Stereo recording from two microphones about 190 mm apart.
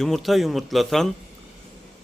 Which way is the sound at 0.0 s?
Centre (ahead or behind).